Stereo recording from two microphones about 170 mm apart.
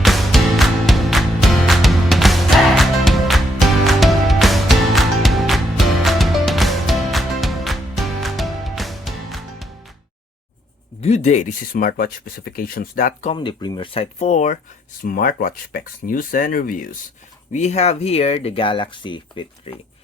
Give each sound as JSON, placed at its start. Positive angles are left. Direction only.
{"t": 0.0, "sound": "music", "side_deg": 0}
{"t": 11.0, "sound": "speech", "side_deg": 40}
{"t": 13.3, "sound": "speech", "side_deg": 30}
{"t": 15.0, "sound": "speech", "side_deg": 55}
{"t": 17.5, "sound": "speech", "side_deg": 40}